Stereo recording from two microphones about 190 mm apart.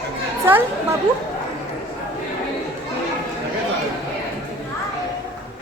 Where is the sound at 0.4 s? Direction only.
10° right (ahead or behind).